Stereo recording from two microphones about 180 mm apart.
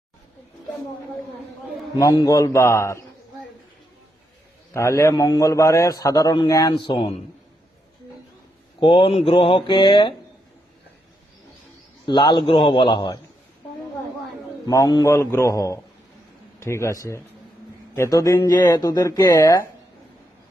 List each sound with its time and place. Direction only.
2.0 s speech: 20° left (ahead or behind)
4.7 s a man's voice: 15° left (ahead or behind)
8.8 s a man's voice: 30° left (ahead or behind)
12.0 s a man's voice: 25° left (ahead or behind)
14.7 s speech: 20° left (ahead or behind)